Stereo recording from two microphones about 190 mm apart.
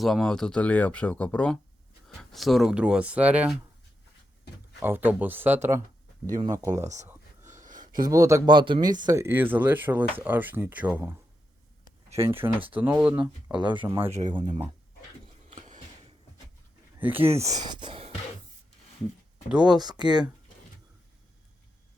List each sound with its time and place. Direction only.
0.0 s speech: centre (ahead or behind)
4.8 s speech: 10° right (ahead or behind)
6.7 s speech: 40° right (ahead or behind)
7.6 s a sound: 45° right (ahead or behind)
8.0 s speech: 15° right (ahead or behind)
12.6 s speech: 10° right (ahead or behind)
15.6 s a sound: 40° right (ahead or behind)
17.0 s speech: 10° right (ahead or behind)
17.4 s speech: 20° right (ahead or behind)
19.6 s speech: 20° right (ahead or behind)